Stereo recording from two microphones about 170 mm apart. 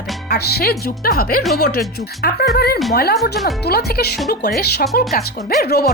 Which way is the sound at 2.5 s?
65° left (ahead or behind).